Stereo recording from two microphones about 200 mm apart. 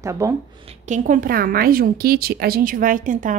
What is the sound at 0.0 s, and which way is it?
Speech, 15° right (ahead or behind).